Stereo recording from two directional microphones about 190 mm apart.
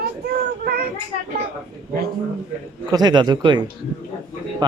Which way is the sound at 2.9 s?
20° right (ahead or behind).